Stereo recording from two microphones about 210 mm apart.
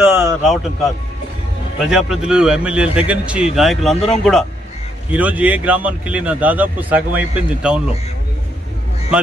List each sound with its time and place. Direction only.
0.0 s a sound: 10° right (ahead or behind)
1.9 s a man's voice: 5° right (ahead or behind)
3.9 s speech: 30° left (ahead or behind)
4.2 s a man's voice: centre (ahead or behind)